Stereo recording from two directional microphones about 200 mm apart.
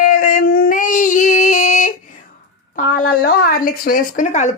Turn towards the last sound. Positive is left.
turn(degrees=35)  # may be behind; listen again after turning